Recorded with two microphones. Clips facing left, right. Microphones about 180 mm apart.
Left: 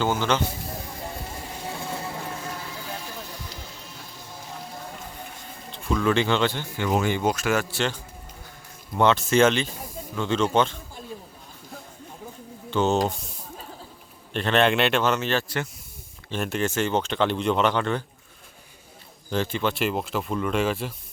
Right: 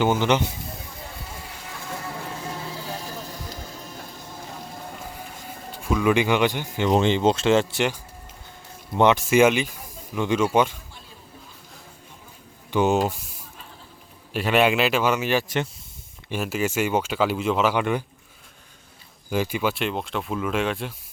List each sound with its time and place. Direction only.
0.0 s speech: 20° right (ahead or behind)
2.5 s music: 30° right (ahead or behind)
5.7 s speech: 10° right (ahead or behind)
12.7 s speech: 10° right (ahead or behind)
14.3 s speech: 10° right (ahead or behind)
16.3 s speech: 5° right (ahead or behind)
19.3 s speech: 10° right (ahead or behind)
19.7 s speech: centre (ahead or behind)